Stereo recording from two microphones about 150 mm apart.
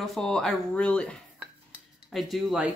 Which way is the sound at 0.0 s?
Centre (ahead or behind).